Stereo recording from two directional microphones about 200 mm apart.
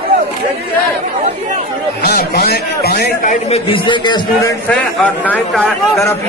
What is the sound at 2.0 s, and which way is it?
Speech, 50° left (ahead or behind).